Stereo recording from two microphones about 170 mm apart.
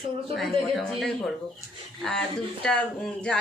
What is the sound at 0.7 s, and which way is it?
Speech, centre (ahead or behind).